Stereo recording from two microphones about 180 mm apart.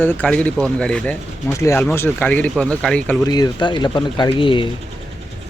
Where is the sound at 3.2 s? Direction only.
20° left (ahead or behind).